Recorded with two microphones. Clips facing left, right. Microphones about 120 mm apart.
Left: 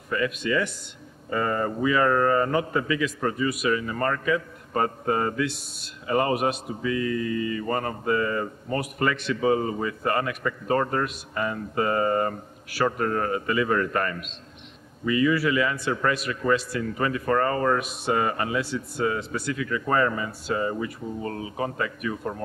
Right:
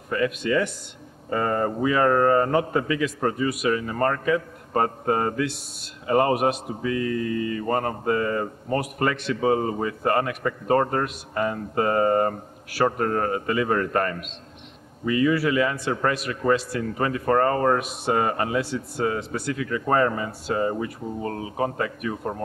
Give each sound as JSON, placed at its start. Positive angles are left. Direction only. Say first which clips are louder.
{"t": 0.1, "sound": "a man's voice", "louder": "right 2 dB", "side_deg": -40}
{"t": 22.1, "sound": "speech", "louder": "right 1 dB", "side_deg": -30}